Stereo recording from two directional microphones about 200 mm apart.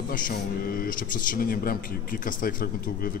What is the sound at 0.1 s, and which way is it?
Speech, 45° left (ahead or behind).